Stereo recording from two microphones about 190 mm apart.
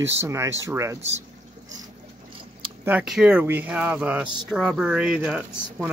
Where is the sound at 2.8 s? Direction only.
5° right (ahead or behind).